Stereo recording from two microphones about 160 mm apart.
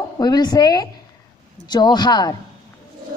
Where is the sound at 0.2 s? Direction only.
25° left (ahead or behind).